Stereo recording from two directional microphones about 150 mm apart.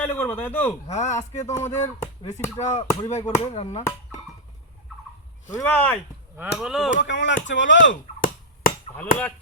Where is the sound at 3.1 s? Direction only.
50° left (ahead or behind).